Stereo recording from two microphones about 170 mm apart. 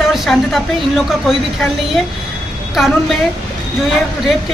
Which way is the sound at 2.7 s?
Centre (ahead or behind).